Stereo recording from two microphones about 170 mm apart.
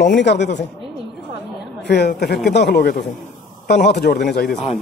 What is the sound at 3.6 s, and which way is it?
Speech, 80° left.